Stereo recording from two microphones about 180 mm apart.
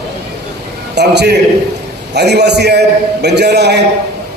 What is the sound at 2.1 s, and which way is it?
A man's voice, 70° right (ahead or behind).